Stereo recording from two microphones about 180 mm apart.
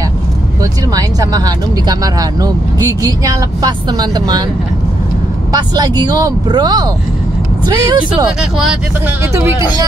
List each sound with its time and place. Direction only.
0.9 s speech: 20° right (ahead or behind)
5.5 s speech: 25° right (ahead or behind)
8.4 s speech: 5° right (ahead or behind)